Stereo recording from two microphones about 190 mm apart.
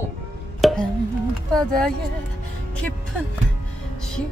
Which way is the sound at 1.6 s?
5° left (ahead or behind).